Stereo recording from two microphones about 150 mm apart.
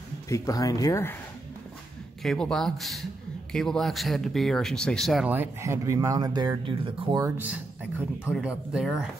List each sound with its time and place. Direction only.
0.3 s speech: 25° left (ahead or behind)
2.2 s speech: 5° left (ahead or behind)
5.3 s speech: 15° right (ahead or behind); by 7.2 s 35° right (ahead or behind)
8.0 s speech: 5° right (ahead or behind)